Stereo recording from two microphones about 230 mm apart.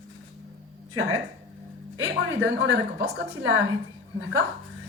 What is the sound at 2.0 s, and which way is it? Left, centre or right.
A woman's voice, right.